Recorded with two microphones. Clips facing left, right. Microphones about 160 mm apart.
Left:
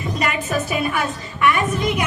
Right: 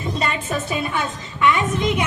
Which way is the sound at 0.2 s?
25° right (ahead or behind).